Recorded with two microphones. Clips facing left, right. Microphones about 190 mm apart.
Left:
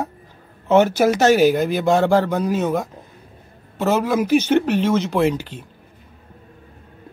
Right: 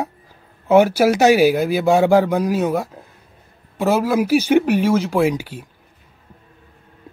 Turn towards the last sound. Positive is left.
turn(degrees=-10)  # may be behind; listen again after turning